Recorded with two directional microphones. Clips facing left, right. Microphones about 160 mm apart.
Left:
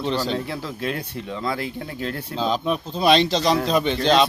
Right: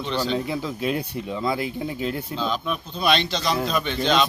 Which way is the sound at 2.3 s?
35° left (ahead or behind).